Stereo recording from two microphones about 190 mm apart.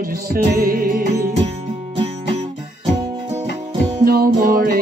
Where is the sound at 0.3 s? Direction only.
50° right (ahead or behind).